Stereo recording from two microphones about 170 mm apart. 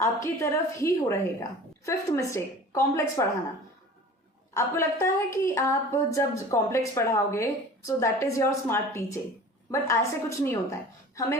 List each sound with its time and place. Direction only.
0.0 s a woman's voice: 15° left (ahead or behind)
4.5 s a woman's voice: 15° left (ahead or behind)